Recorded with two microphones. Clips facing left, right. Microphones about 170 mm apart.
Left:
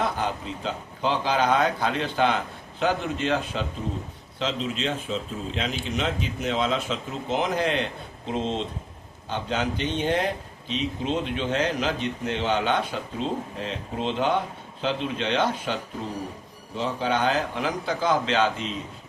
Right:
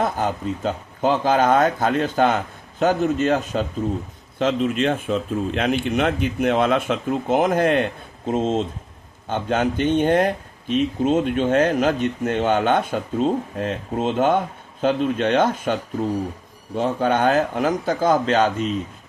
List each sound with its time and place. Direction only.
0.0 s speech: 45° right (ahead or behind)